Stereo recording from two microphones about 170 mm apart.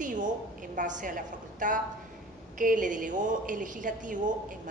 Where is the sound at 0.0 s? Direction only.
50° right (ahead or behind).